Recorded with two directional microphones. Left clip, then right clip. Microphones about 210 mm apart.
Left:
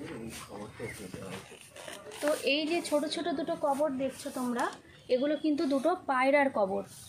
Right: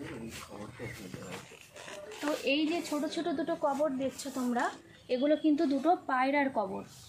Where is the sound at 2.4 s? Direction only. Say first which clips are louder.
Right 3 dB; 45° left (ahead or behind).